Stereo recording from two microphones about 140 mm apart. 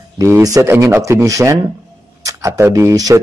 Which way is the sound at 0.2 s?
25° right (ahead or behind).